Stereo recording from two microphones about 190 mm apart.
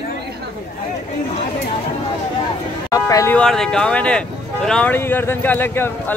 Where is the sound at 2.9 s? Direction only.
15° left (ahead or behind).